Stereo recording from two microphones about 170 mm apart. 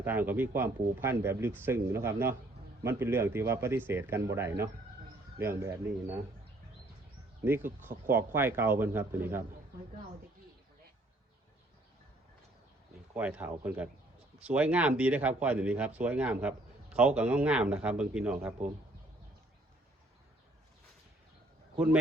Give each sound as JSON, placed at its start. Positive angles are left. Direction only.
{"t": 0.0, "sound": "speech", "side_deg": -10}
{"t": 7.4, "sound": "speech", "side_deg": -10}
{"t": 13.1, "sound": "speech", "side_deg": -10}